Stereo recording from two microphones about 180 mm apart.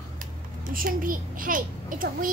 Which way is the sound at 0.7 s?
50° right (ahead or behind).